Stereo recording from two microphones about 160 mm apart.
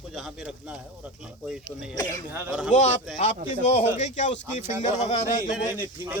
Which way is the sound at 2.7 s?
50° left (ahead or behind).